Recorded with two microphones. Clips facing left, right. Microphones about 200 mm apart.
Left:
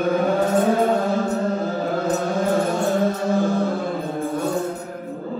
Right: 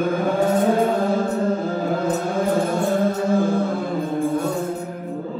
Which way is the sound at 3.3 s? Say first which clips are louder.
Right 2 dB; 55° right (ahead or behind).